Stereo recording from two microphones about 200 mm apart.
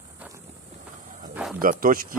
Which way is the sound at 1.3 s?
Centre (ahead or behind).